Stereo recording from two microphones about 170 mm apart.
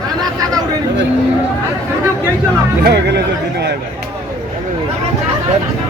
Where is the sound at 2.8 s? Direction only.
75° right (ahead or behind).